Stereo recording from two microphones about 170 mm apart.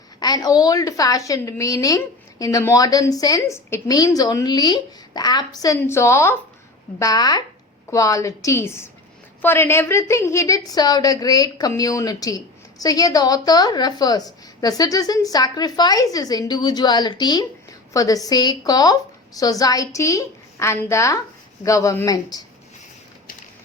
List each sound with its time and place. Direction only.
0.2 s a woman's voice: 20° left (ahead or behind)